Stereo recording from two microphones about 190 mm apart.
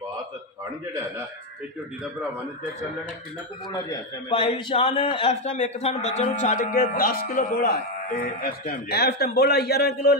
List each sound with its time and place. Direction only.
3.7 s a man's voice: 20° left (ahead or behind); by 10.1 s 60° left (ahead or behind)